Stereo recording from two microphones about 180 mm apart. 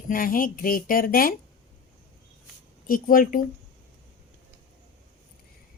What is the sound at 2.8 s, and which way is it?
Speech, 50° left (ahead or behind).